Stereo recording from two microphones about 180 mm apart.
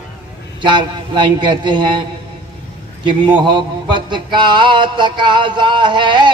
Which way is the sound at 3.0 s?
25° right (ahead or behind).